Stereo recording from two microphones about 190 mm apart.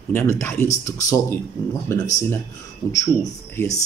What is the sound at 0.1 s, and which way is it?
Speech, 15° left (ahead or behind).